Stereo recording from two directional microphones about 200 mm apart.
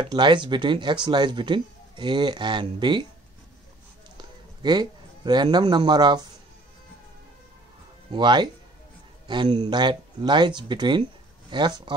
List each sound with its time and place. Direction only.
0.0 s speech: 25° right (ahead or behind)
4.2 s speech: 20° right (ahead or behind)
8.1 s speech: 20° right (ahead or behind)